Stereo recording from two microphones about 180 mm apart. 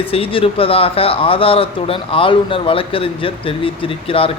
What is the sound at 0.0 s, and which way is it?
Speech, 30° left (ahead or behind).